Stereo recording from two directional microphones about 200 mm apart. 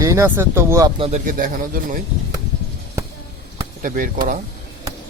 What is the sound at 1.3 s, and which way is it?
Speech, 45° right (ahead or behind).